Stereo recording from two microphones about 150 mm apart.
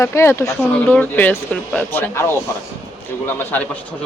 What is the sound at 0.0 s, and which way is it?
Speech, 20° left (ahead or behind).